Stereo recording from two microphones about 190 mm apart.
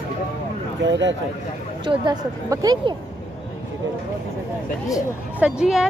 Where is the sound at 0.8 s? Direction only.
70° right (ahead or behind).